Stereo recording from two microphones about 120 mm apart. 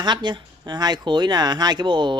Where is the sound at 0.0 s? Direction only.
40° right (ahead or behind).